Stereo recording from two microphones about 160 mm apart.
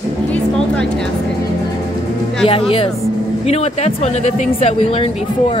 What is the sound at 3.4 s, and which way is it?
Speech, 40° left (ahead or behind).